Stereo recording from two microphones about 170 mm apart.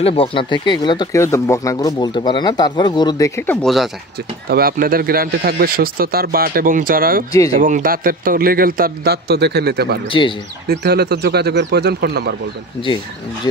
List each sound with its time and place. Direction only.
0.0 s speech: 35° left (ahead or behind)
3.6 s speech: centre (ahead or behind)
4.5 s speech: 60° right (ahead or behind)
10.1 s speech: 30° left (ahead or behind)
10.8 s speech: 65° right (ahead or behind)